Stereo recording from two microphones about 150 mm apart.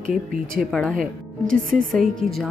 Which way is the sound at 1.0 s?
65° right (ahead or behind).